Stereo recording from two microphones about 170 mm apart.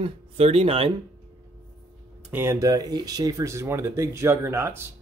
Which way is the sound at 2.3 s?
15° right (ahead or behind).